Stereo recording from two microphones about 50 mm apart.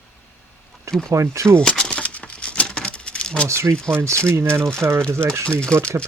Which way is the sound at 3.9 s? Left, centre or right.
Right.